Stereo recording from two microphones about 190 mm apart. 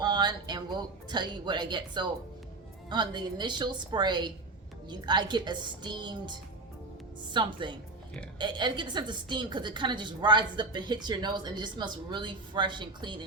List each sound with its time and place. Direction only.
0.0 s a woman's voice: 20° right (ahead or behind)
7.3 s a woman's voice: 25° right (ahead or behind)